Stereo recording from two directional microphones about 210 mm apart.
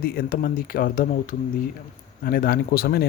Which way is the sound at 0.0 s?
45° left (ahead or behind).